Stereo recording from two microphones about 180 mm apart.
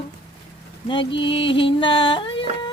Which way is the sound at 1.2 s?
30° left (ahead or behind).